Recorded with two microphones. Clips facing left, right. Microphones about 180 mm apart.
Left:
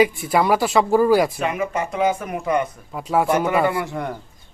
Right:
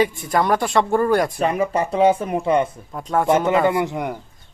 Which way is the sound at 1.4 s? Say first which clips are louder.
Right 3 dB; 35° right (ahead or behind).